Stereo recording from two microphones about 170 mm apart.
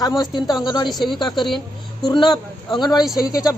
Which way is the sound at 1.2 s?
25° left (ahead or behind).